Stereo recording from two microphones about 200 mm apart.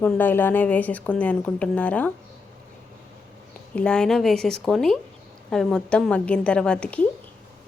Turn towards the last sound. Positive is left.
turn(degrees=5)  # may be behind; listen again after turning